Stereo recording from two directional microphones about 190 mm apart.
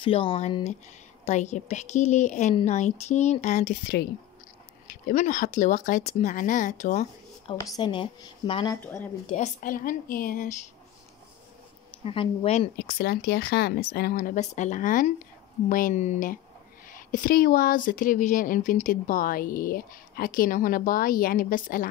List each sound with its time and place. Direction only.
0.0 s speech: 30° left (ahead or behind)
7.7 s speech: 25° left (ahead or behind)
9.3 s speech: 45° left (ahead or behind)
12.0 s speech: 30° left (ahead or behind)
12.7 s speech: 55° left (ahead or behind)